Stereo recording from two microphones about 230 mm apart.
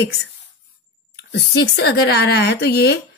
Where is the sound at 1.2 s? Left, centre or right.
Left.